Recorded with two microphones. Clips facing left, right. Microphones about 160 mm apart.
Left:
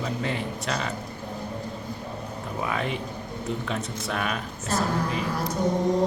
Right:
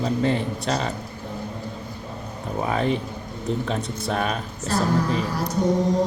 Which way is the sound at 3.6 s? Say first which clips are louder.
Right 4 dB; 35° right (ahead or behind).